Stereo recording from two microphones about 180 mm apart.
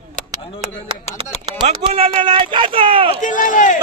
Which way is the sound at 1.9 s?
30° right (ahead or behind).